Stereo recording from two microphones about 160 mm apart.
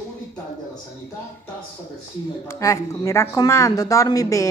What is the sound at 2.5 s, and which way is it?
Speech, 20° left (ahead or behind).